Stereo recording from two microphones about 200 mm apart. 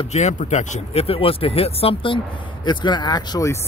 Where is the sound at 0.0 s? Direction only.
35° left (ahead or behind).